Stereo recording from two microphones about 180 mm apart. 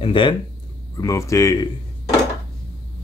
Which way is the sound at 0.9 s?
15° left (ahead or behind).